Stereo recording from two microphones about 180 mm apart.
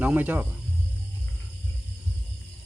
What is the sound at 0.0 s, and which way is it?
Speech, 10° right (ahead or behind).